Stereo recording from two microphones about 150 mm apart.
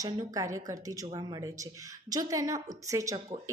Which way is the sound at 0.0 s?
20° right (ahead or behind).